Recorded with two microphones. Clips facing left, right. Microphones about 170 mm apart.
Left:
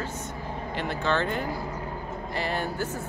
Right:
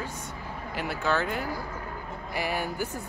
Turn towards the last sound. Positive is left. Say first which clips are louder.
# left 1 dB
turn(degrees=-10)  # may be behind; listen again after turning